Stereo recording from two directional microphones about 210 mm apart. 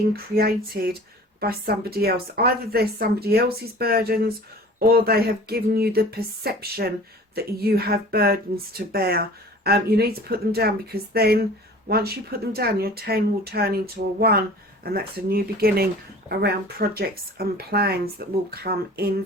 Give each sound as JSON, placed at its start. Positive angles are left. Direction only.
{"t": 0.3, "sound": "a woman's voice", "side_deg": -45}